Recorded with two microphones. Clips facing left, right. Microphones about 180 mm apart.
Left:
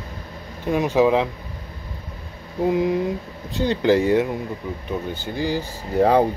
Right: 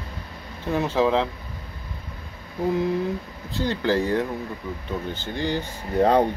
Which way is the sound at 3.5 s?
15° left (ahead or behind).